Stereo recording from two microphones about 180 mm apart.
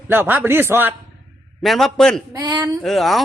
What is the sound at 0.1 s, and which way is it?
Speech, 10° right (ahead or behind).